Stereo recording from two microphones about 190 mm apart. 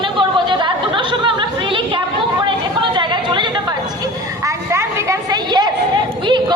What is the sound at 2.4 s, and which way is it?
Chatter, 25° right (ahead or behind).